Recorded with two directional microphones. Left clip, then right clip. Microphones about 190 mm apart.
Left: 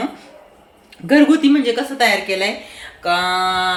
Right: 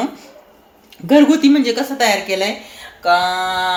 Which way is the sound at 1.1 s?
20° right (ahead or behind).